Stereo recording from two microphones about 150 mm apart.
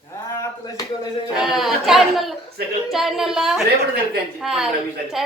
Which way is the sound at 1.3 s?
Centre (ahead or behind).